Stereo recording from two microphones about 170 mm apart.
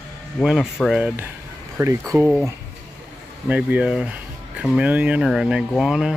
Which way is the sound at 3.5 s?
10° right (ahead or behind).